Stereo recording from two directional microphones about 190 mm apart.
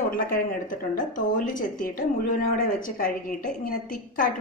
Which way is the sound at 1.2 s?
45° left (ahead or behind).